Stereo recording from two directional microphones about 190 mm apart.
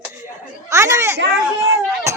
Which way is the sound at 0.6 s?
15° right (ahead or behind).